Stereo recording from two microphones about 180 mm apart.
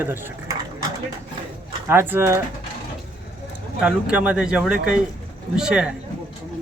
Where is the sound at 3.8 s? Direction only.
5° right (ahead or behind).